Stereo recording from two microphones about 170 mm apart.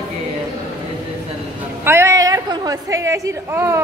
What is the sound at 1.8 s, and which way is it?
A woman's voice, 15° right (ahead or behind).